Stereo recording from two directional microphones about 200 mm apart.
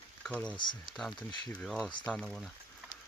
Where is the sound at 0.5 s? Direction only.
25° left (ahead or behind).